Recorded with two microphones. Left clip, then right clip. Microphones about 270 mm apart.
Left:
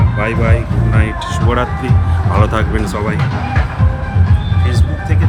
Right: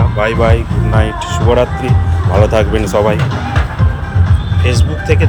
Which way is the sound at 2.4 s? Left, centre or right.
Centre.